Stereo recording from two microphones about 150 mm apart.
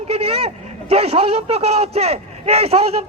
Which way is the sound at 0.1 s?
40° right (ahead or behind).